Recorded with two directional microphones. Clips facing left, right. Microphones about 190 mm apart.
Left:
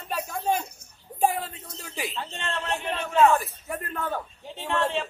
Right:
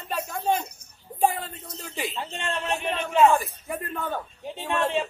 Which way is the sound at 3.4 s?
Centre (ahead or behind).